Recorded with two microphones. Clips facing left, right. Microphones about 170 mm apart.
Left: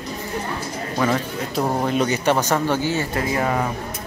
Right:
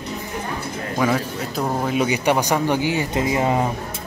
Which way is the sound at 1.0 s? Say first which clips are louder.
Right 1 dB; 5° right (ahead or behind).